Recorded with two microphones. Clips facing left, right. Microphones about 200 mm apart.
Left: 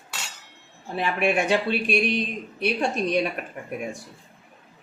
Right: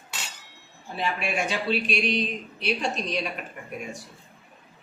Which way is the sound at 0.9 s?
60° left (ahead or behind).